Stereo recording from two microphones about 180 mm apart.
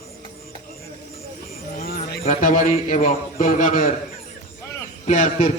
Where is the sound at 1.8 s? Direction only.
60° left (ahead or behind).